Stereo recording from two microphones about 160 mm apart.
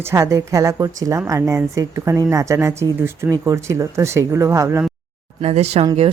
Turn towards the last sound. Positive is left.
turn(degrees=-40)  # may be behind; listen again after turning